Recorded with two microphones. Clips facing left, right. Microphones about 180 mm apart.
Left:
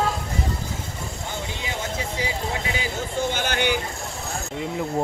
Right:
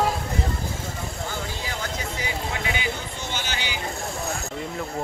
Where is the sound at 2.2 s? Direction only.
30° left (ahead or behind).